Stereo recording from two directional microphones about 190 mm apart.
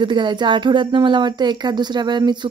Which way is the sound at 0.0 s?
25° right (ahead or behind).